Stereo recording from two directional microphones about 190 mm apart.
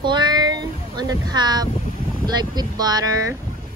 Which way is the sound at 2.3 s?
20° right (ahead or behind).